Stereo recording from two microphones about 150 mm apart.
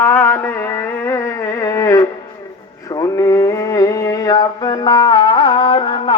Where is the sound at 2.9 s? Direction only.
25° left (ahead or behind).